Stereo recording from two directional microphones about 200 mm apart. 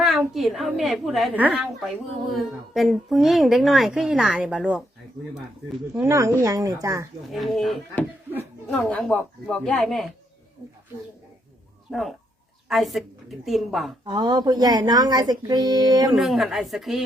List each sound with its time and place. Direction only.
0.0 s a woman's voice: centre (ahead or behind)
5.9 s a woman's voice: 15° right (ahead or behind)
7.3 s a woman's voice: centre (ahead or behind)
11.9 s a woman's voice: centre (ahead or behind)
14.0 s speech: 25° right (ahead or behind)
16.1 s a woman's voice: centre (ahead or behind)